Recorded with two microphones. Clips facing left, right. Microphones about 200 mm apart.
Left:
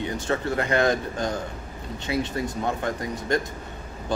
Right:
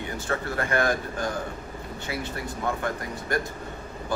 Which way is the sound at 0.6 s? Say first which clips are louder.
Left 2 dB; 20° left (ahead or behind).